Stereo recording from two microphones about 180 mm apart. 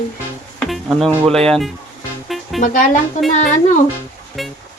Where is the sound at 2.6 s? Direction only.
45° left (ahead or behind).